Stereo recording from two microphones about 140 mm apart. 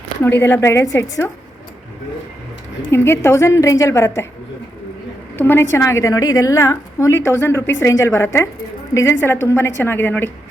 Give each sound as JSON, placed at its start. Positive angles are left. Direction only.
{"t": 0.2, "sound": "a woman's voice", "side_deg": 15}
{"t": 2.9, "sound": "a woman's voice", "side_deg": 20}
{"t": 5.4, "sound": "a woman's voice", "side_deg": 15}